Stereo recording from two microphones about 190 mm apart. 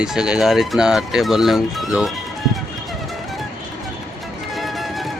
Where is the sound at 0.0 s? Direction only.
5° right (ahead or behind).